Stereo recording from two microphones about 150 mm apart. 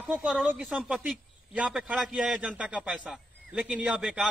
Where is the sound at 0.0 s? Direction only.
5° right (ahead or behind).